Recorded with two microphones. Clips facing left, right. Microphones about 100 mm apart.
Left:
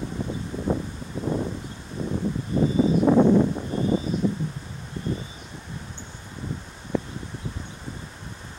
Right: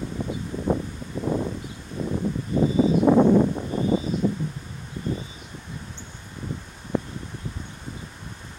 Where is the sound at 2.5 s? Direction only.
15° right (ahead or behind).